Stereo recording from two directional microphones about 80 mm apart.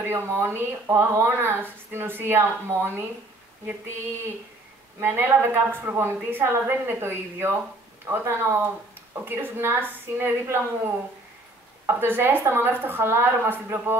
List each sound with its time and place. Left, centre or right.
0.0 s speech: right
5.0 s speech: right